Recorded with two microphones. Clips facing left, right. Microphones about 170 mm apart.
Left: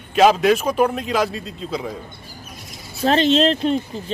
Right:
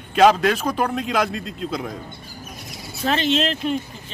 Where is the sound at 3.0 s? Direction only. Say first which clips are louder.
Left 5 dB; 35° left (ahead or behind).